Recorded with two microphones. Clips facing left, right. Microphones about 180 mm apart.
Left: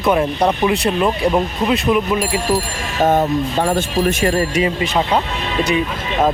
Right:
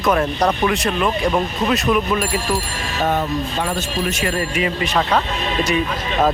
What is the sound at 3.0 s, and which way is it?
Speech, 40° left (ahead or behind).